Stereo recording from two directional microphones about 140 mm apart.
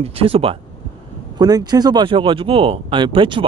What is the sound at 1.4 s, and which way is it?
Speech, 25° right (ahead or behind).